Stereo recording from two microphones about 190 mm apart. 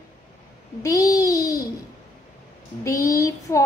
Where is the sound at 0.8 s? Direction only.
15° left (ahead or behind).